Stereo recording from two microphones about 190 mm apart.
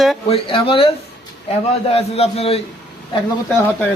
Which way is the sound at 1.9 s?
30° left (ahead or behind).